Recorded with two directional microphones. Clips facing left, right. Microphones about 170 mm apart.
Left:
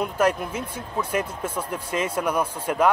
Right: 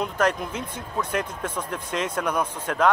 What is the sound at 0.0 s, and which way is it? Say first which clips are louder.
Speech: left 2 dB; 10° left (ahead or behind).